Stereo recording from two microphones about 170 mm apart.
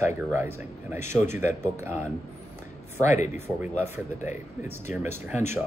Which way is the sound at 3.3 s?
15° right (ahead or behind).